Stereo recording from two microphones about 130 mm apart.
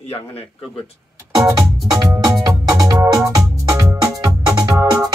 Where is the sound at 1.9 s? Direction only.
25° right (ahead or behind).